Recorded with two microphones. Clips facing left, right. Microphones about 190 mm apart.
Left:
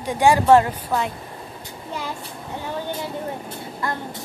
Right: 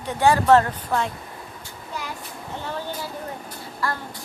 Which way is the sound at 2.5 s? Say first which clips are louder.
Left 2 dB; 15° left (ahead or behind).